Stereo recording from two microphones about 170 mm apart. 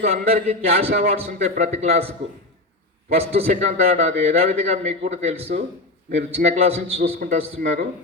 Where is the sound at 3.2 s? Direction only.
40° right (ahead or behind).